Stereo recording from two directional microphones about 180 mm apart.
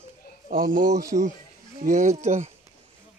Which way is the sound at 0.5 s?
50° right (ahead or behind).